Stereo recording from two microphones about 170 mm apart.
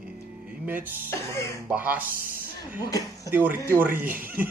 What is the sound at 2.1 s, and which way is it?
Speech, 55° right (ahead or behind).